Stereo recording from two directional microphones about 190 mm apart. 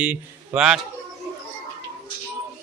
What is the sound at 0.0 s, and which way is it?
Speech, 5° right (ahead or behind).